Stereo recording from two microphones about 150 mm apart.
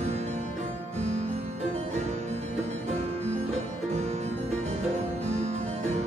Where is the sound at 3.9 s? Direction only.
45° right (ahead or behind).